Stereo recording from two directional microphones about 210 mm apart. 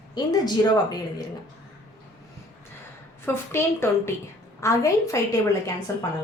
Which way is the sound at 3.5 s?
10° left (ahead or behind).